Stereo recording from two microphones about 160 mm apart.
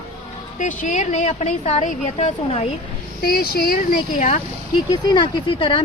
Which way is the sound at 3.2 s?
70° left (ahead or behind).